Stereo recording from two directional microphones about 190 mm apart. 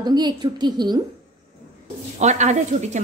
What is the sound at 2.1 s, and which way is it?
Speech, 40° right (ahead or behind).